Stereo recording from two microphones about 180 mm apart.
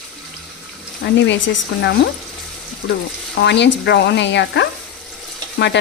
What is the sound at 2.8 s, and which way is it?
Speech, 90° left.